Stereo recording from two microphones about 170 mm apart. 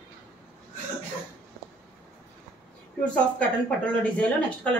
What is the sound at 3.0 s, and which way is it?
Speech, 10° left (ahead or behind).